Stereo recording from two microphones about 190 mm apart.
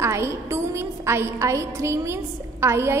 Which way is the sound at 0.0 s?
15° right (ahead or behind).